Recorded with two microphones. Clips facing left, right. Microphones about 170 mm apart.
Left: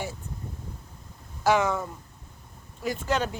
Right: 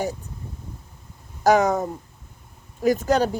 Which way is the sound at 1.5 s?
40° right (ahead or behind).